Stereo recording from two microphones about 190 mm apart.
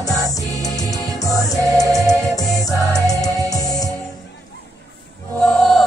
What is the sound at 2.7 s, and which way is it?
Music, 20° left (ahead or behind).